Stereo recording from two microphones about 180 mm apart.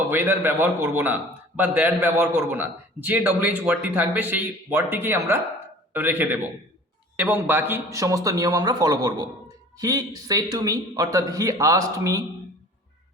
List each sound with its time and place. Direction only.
0.1 s a man's voice: 10° right (ahead or behind)